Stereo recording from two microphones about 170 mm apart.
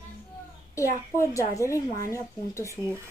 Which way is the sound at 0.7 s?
20° left (ahead or behind).